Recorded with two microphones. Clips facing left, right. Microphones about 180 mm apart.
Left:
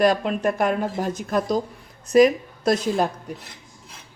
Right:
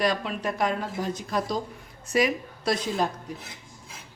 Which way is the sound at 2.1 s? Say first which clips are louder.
Left 9 dB; 40° left (ahead or behind).